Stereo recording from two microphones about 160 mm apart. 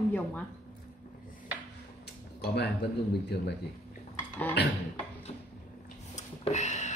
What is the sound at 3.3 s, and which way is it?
Speech, 90° left.